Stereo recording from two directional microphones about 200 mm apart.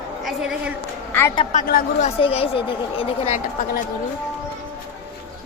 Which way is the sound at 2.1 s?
30° left (ahead or behind).